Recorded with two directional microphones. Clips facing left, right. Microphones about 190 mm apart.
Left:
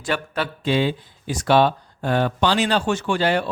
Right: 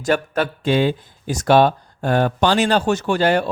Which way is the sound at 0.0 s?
45° right (ahead or behind).